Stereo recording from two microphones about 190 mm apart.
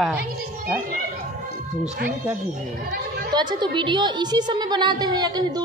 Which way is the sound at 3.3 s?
25° right (ahead or behind).